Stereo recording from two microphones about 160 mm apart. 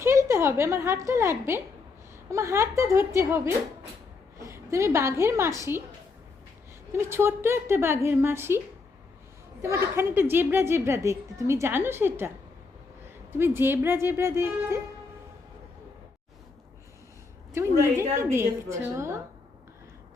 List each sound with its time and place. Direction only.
0.0 s a woman's voice: 15° right (ahead or behind)
6.9 s a woman's voice: 15° right (ahead or behind)
13.3 s a woman's voice: 15° right (ahead or behind)
17.5 s a woman's voice: 15° right (ahead or behind)